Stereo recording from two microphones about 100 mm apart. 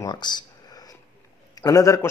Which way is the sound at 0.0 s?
45° left (ahead or behind).